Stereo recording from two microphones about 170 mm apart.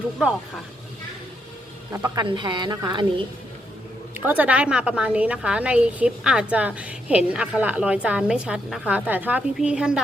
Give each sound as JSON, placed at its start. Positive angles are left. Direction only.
{"t": 1.9, "sound": "a woman's voice", "side_deg": -15}
{"t": 2.2, "sound": "a woman's voice", "side_deg": -30}
{"t": 4.3, "sound": "a woman's voice", "side_deg": -10}